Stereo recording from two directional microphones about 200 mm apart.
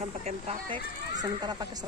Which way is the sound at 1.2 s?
20° right (ahead or behind).